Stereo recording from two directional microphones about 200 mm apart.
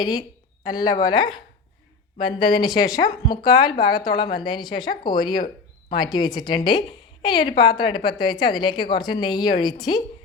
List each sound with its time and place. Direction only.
0.0 s a woman's voice: 20° left (ahead or behind)